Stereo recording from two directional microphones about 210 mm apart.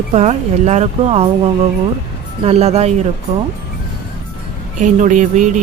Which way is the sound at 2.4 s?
30° right (ahead or behind).